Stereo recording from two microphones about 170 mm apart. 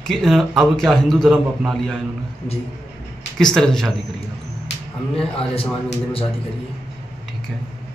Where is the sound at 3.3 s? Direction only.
5° left (ahead or behind).